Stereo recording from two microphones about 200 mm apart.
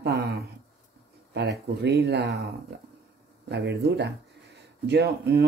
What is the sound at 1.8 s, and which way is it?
Speech, 55° right (ahead or behind).